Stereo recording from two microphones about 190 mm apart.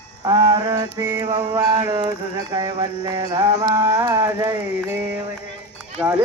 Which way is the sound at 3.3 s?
20° right (ahead or behind).